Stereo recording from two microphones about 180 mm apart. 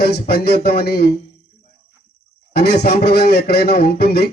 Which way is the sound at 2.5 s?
65° left (ahead or behind).